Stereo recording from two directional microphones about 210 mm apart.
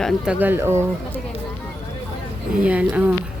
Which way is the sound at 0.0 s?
5° right (ahead or behind).